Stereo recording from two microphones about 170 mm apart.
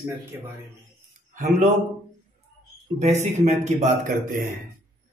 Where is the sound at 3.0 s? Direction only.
40° right (ahead or behind).